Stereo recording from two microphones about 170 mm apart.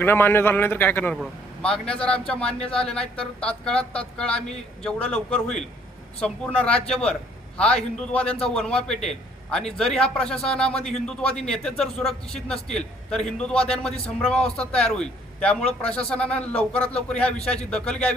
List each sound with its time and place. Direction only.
0.0 s a man's voice: 10° left (ahead or behind)
17.3 s a man's voice: 40° left (ahead or behind)
17.7 s a man's voice: 5° left (ahead or behind)